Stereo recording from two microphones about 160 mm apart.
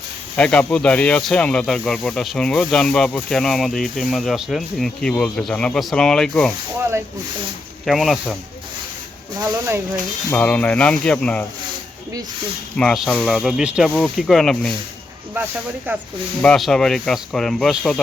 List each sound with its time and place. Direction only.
0.3 s speech: 5° left (ahead or behind)
7.9 s speech: centre (ahead or behind)
9.4 s speech: 15° right (ahead or behind)
10.2 s speech: 10° left (ahead or behind)
12.7 s speech: centre (ahead or behind)
15.9 s speech: 10° right (ahead or behind)
16.4 s speech: 5° left (ahead or behind)